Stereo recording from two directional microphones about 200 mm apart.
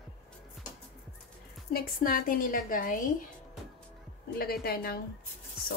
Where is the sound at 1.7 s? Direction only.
45° left (ahead or behind).